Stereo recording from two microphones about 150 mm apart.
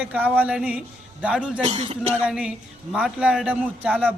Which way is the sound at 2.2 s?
5° right (ahead or behind).